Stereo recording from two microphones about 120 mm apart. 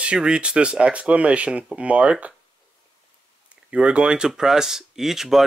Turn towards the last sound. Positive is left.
turn(degrees=-5)  # may be behind; listen again after turning